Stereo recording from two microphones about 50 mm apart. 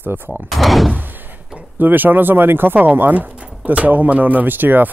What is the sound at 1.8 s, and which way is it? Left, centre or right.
Speech, right.